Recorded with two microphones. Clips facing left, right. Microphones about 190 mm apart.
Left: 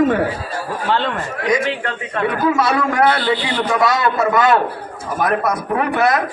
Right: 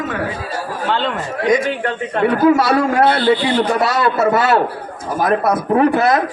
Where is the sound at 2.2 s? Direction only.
30° right (ahead or behind).